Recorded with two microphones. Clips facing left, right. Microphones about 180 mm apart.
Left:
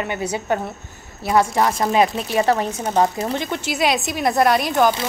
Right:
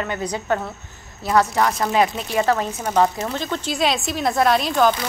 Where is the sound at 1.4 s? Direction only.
25° left (ahead or behind).